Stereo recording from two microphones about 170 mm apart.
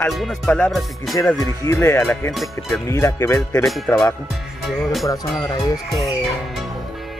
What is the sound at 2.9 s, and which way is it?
Speech, 15° left (ahead or behind).